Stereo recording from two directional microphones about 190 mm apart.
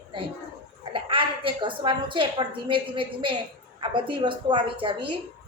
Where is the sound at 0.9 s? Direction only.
30° right (ahead or behind).